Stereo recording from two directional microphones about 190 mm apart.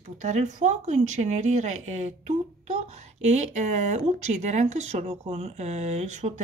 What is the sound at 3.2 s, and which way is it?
Speech, 35° right (ahead or behind).